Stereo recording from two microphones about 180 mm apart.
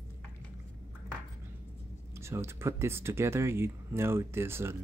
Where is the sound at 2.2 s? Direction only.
15° right (ahead or behind).